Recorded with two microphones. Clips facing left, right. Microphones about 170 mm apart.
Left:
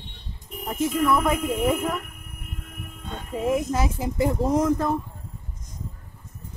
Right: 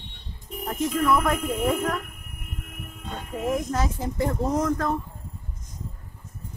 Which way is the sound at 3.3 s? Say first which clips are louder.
Left 2 dB; 5° left (ahead or behind).